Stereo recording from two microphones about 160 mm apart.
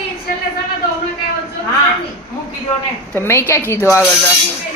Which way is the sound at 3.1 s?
15° left (ahead or behind).